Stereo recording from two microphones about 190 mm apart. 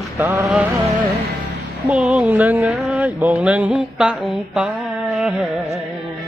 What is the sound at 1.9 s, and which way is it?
Mantra, 5° right (ahead or behind).